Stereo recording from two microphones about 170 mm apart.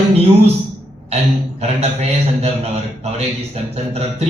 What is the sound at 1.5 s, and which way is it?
A man's voice, 40° right (ahead or behind).